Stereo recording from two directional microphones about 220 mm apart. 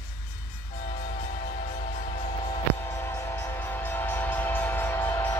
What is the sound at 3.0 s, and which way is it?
Train, 10° left (ahead or behind).